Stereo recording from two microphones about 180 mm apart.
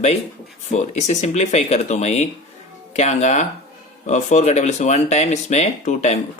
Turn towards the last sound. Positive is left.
turn(degrees=40)  # may be behind; listen again after turning